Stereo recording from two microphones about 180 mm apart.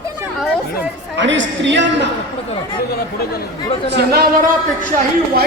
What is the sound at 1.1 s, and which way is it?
Speech, 90° right.